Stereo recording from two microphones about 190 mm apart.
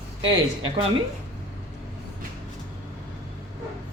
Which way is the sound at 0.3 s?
25° right (ahead or behind).